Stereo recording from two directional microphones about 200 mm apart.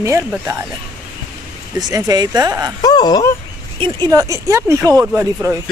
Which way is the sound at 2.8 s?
20° left (ahead or behind).